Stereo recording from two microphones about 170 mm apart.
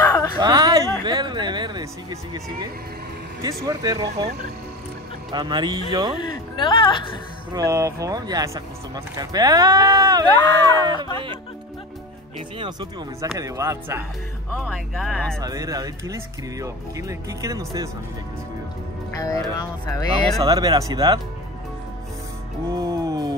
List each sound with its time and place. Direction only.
0.0 s a sound: 20° left (ahead or behind)
0.4 s a woman's voice: 25° right (ahead or behind)
5.3 s speech: 25° right (ahead or behind)
6.2 s speech: 30° left (ahead or behind)
7.5 s speech: 20° right (ahead or behind)
10.2 s speech: 25° left (ahead or behind)
12.4 s speech: 30° right (ahead or behind)
13.2 s speech: 20° right (ahead or behind)
14.6 s speech: centre (ahead or behind)
15.4 s speech: 20° right (ahead or behind)
19.5 s speech: 20° left (ahead or behind)
20.4 s speech: 20° right (ahead or behind)
22.7 s music: 20° right (ahead or behind)